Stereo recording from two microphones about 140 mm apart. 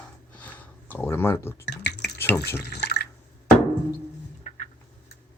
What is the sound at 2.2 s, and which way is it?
Speech, 15° left (ahead or behind).